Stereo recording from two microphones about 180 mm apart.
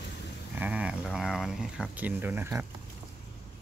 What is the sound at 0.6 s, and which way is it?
Speech, 5° right (ahead or behind).